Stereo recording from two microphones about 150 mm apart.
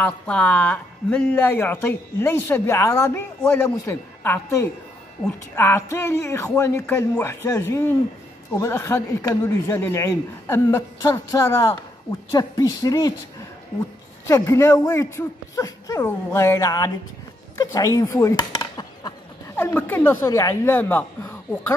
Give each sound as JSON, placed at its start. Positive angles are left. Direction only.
{"t": 0.0, "sound": "a man's voice", "side_deg": 10}
{"t": 14.2, "sound": "a man's voice", "side_deg": 20}
{"t": 17.6, "sound": "chop", "side_deg": 25}
{"t": 19.6, "sound": "speech", "side_deg": 15}